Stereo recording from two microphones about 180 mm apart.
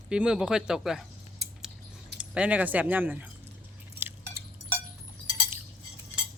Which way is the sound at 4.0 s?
15° right (ahead or behind).